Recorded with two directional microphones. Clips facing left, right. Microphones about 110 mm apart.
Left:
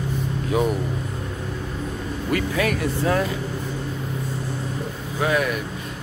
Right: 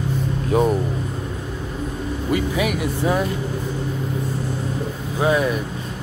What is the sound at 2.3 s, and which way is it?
Speech, 15° right (ahead or behind).